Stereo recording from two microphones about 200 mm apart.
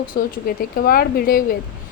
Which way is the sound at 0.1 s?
50° left (ahead or behind).